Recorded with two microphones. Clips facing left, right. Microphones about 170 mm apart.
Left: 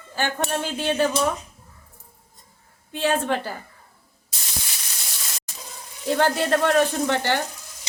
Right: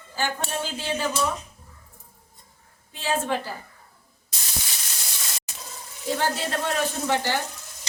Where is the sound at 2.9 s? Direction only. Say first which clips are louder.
Left 4 dB; 60° left (ahead or behind).